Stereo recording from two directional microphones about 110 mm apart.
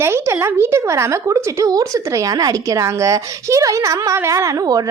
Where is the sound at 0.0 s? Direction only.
20° right (ahead or behind).